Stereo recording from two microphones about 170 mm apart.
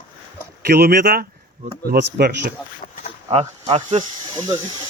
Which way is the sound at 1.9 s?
70° right (ahead or behind).